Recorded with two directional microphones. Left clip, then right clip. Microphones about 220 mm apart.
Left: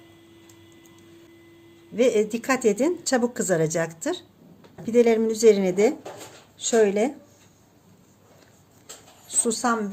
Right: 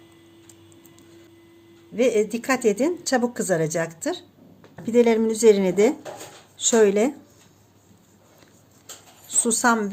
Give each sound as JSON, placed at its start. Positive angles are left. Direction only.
{"t": 2.0, "sound": "a woman's voice", "side_deg": 5}
{"t": 4.8, "sound": "a woman's voice", "side_deg": -10}
{"t": 9.2, "sound": "speech", "side_deg": -10}